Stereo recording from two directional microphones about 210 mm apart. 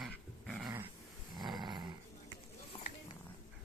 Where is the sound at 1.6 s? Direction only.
20° right (ahead or behind).